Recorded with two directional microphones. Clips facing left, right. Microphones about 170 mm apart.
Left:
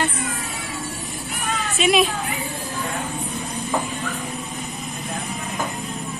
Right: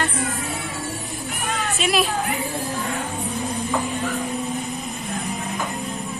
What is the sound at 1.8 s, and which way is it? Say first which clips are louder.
Speech: left 4 dB; centre (ahead or behind).